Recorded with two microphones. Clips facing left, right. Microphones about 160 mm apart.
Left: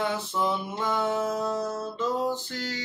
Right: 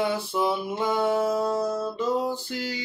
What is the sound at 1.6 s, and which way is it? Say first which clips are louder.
Music: right 4 dB; 40° right (ahead or behind).